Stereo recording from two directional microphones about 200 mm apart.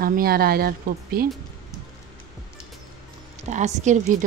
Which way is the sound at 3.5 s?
35° right (ahead or behind).